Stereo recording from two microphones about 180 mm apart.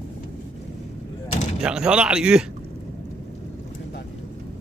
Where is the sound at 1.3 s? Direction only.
40° left (ahead or behind).